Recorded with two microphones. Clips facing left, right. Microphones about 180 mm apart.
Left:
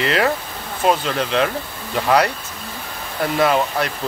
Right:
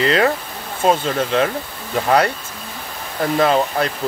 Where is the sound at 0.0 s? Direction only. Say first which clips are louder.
Right 2 dB; 30° right (ahead or behind).